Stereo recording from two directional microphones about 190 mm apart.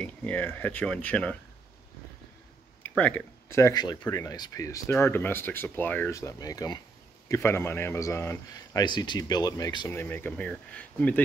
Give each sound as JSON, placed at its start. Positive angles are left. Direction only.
{"t": 0.0, "sound": "speech", "side_deg": 10}
{"t": 3.0, "sound": "speech", "side_deg": 10}
{"t": 9.9, "sound": "speech", "side_deg": 10}